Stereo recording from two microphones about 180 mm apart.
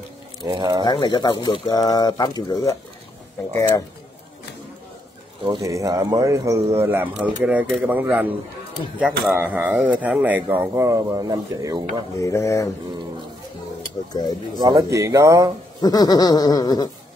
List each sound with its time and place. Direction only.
0.5 s speech: 25° right (ahead or behind)
0.8 s speech: 25° left (ahead or behind)
5.5 s speech: 20° right (ahead or behind)
12.2 s speech: 15° left (ahead or behind)
14.6 s speech: 20° right (ahead or behind)
15.8 s speech: 20° left (ahead or behind)